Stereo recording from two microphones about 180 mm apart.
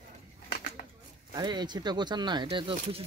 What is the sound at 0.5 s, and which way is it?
Bird, 50° left (ahead or behind).